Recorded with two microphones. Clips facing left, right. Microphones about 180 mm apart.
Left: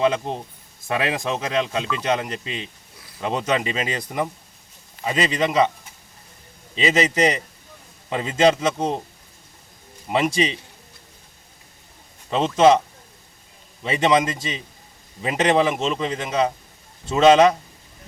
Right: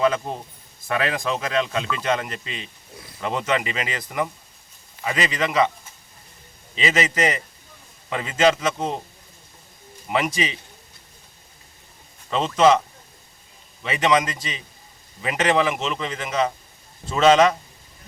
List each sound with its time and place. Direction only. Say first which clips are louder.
0.0 s speech: left 1 dB; 25° left (ahead or behind)
6.7 s speech: left 3 dB; 25° left (ahead or behind)
10.1 s speech: left 3 dB; 30° left (ahead or behind)
12.4 s speech: left 2 dB; 25° left (ahead or behind)
13.8 s speech: left 2 dB; 30° left (ahead or behind)